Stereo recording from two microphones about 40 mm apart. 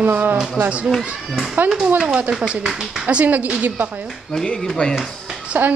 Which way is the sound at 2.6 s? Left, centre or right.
Centre.